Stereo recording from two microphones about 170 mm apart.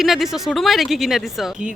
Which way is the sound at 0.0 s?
Centre (ahead or behind).